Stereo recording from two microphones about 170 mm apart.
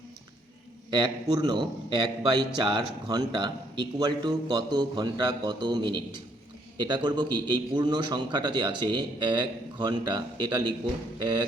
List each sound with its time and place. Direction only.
0.9 s a man's voice: 25° right (ahead or behind)